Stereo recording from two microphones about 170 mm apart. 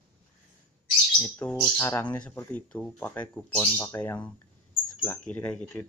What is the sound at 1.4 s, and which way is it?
Speech, 10° left (ahead or behind).